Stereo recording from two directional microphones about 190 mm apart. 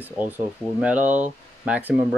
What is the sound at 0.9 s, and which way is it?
Speech, 40° right (ahead or behind).